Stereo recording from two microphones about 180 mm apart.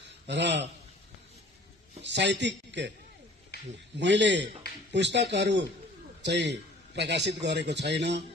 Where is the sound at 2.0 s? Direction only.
75° right (ahead or behind).